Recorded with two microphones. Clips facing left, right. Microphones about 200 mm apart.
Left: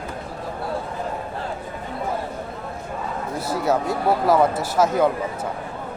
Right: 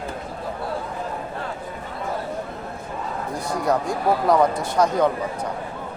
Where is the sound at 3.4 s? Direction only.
5° left (ahead or behind).